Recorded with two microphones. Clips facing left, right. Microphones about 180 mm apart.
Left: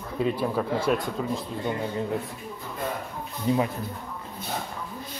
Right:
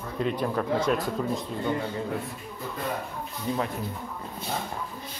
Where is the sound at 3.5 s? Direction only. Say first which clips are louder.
Left 5 dB; 15° left (ahead or behind).